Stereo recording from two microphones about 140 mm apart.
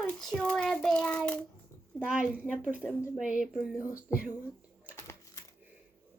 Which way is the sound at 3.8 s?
20° left (ahead or behind).